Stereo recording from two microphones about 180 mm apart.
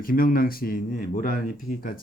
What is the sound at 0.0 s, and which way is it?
Speech, 50° left (ahead or behind).